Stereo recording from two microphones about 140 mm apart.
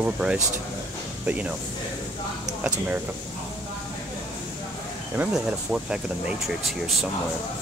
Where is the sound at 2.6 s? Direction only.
10° right (ahead or behind).